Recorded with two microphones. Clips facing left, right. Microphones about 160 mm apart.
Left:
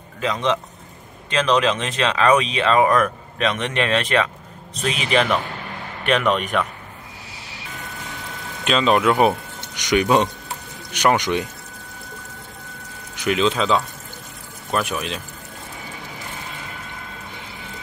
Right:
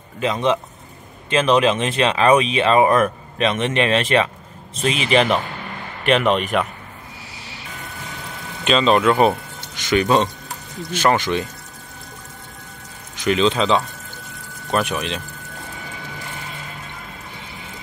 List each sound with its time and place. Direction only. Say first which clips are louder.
0.2 s speech: right 2 dB; 5° right (ahead or behind)
5.1 s speech: right 2 dB; 30° right (ahead or behind)
6.4 s speech: right 2 dB; 5° right (ahead or behind)
8.6 s speech: right 2 dB; 5° left (ahead or behind)
13.1 s speech: right 2 dB; 10° left (ahead or behind)